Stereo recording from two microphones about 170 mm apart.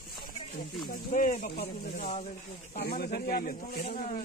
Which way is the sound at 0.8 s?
55° left (ahead or behind).